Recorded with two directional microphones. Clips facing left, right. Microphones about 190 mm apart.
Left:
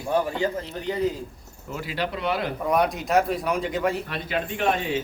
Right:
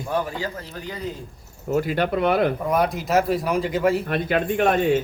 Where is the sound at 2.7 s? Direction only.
Centre (ahead or behind).